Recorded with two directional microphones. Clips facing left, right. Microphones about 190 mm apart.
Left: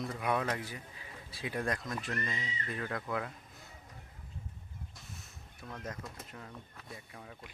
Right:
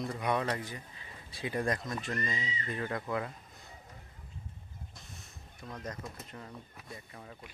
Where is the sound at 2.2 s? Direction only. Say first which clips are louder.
Right 2 dB; 15° right (ahead or behind).